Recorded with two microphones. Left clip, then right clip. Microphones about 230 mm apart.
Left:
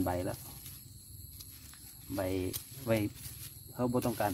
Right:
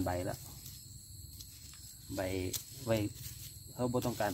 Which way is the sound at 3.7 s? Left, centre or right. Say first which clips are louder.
Left 2 dB; centre.